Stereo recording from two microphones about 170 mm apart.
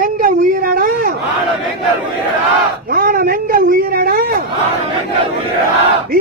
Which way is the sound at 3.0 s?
55° right (ahead or behind).